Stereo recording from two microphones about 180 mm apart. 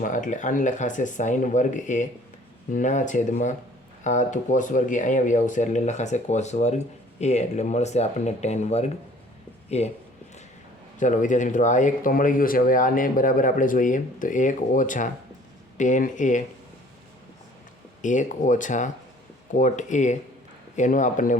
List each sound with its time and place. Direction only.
0.0 s speech: 45° left (ahead or behind)
11.0 s speech: 45° left (ahead or behind)
18.0 s speech: 45° left (ahead or behind)